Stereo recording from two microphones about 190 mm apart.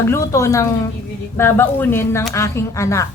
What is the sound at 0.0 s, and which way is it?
A woman's voice, 15° left (ahead or behind).